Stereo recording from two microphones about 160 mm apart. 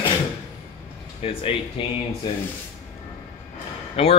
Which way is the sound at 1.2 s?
35° left (ahead or behind).